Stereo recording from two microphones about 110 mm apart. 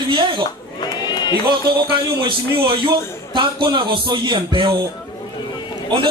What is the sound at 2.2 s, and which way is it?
A man's voice, 45° right (ahead or behind).